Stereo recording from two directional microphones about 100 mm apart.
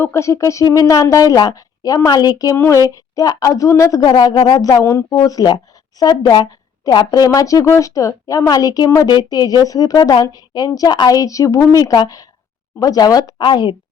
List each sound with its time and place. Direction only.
0.0 s speech: 30° left (ahead or behind)
4.0 s speech: 45° left (ahead or behind)
4.8 s speech: 25° left (ahead or behind)
5.0 s speech: 40° left (ahead or behind)